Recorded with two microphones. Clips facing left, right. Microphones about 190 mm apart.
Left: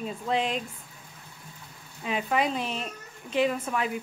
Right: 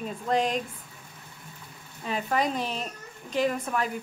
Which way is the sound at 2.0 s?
5° left (ahead or behind).